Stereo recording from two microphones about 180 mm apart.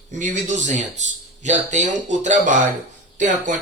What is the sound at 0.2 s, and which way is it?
Speech, 45° right (ahead or behind).